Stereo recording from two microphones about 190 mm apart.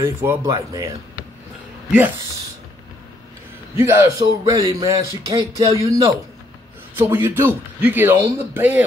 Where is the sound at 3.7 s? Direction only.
15° right (ahead or behind).